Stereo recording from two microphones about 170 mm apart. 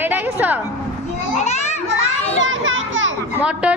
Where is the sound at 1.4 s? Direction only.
40° left (ahead or behind).